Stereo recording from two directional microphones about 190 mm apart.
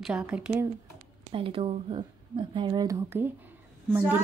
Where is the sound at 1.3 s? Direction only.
30° right (ahead or behind); by 3.3 s 10° right (ahead or behind).